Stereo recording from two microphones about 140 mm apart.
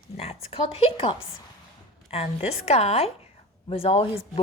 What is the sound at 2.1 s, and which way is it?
A woman's voice, 45° left (ahead or behind).